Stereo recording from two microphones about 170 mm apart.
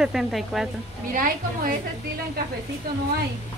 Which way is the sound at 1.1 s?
55° right (ahead or behind).